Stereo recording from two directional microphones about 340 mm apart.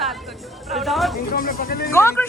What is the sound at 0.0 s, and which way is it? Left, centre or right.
Chatter, centre.